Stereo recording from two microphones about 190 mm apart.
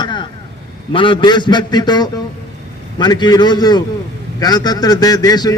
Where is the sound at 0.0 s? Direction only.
25° left (ahead or behind).